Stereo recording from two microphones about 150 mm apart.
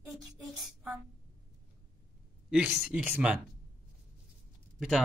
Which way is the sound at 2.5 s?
5° right (ahead or behind).